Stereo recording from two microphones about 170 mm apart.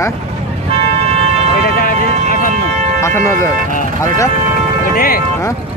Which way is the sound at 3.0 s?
15° left (ahead or behind).